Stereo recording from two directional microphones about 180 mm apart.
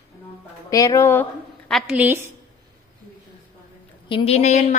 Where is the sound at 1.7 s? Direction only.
5° right (ahead or behind).